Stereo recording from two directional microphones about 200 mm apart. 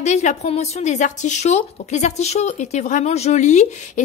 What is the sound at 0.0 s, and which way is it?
Speech, 35° left (ahead or behind).